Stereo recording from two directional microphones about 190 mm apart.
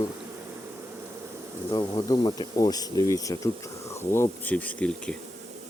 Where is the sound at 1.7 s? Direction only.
20° left (ahead or behind); by 5.2 s 5° left (ahead or behind).